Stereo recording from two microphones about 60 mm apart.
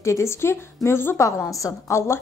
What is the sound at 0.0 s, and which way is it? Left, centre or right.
A woman's voice, left.